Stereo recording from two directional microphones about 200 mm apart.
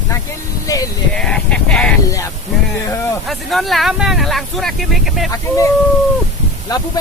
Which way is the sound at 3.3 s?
Centre (ahead or behind).